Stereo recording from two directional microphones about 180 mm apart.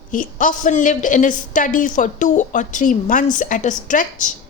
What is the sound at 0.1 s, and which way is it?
Speech, 45° left (ahead or behind).